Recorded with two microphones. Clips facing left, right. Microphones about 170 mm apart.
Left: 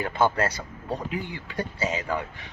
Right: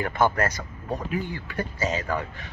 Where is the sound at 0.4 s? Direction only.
30° left (ahead or behind).